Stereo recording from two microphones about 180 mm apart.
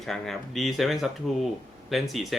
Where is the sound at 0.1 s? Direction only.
Centre (ahead or behind).